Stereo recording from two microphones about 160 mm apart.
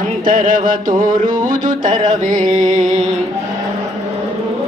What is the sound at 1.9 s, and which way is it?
Music, 25° right (ahead or behind).